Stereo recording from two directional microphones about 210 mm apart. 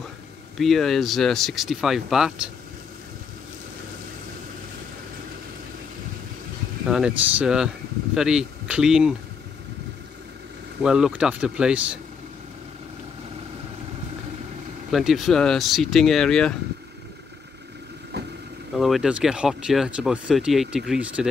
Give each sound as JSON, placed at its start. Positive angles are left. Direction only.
{"t": 0.6, "sound": "speech", "side_deg": 0}
{"t": 6.9, "sound": "speech", "side_deg": -5}
{"t": 10.8, "sound": "speech", "side_deg": -5}
{"t": 14.9, "sound": "speech", "side_deg": 0}
{"t": 18.1, "sound": "vehicle", "side_deg": -50}
{"t": 18.8, "sound": "speech", "side_deg": 0}